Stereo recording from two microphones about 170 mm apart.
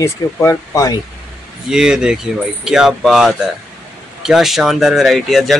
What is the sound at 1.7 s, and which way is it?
Speech, 5° right (ahead or behind).